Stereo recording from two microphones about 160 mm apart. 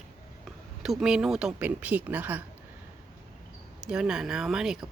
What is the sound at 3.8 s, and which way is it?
Speech, 5° right (ahead or behind).